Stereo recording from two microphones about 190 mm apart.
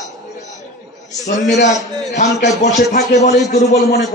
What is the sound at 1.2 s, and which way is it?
A man's voice, 40° left (ahead or behind).